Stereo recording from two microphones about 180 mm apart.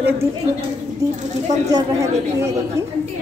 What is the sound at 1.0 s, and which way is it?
A woman's voice, 20° right (ahead or behind).